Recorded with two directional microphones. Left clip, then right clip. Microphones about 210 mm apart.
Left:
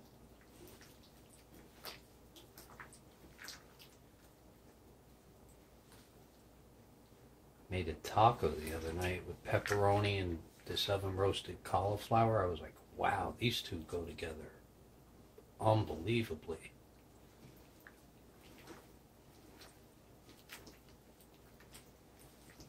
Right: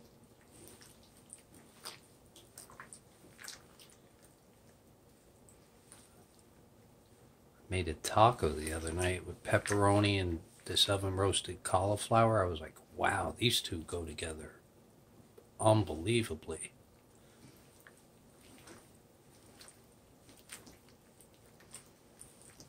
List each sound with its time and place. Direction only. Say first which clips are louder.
7.7 s speech: right 3 dB; 50° right (ahead or behind)
15.6 s speech: right 4 dB; 50° right (ahead or behind)